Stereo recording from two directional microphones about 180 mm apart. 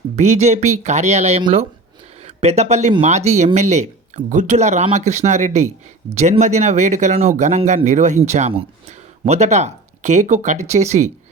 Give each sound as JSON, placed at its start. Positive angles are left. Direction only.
{"t": 0.2, "sound": "speech", "side_deg": -40}